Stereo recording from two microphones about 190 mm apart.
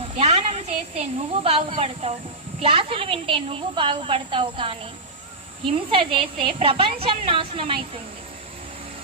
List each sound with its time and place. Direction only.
0.2 s a woman's voice: 35° right (ahead or behind)